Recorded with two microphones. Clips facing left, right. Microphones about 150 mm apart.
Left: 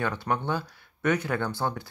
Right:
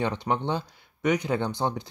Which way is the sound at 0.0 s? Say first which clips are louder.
Right 2 dB; 20° right (ahead or behind).